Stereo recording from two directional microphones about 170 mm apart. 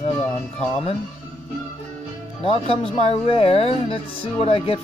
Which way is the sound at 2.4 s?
30° left (ahead or behind).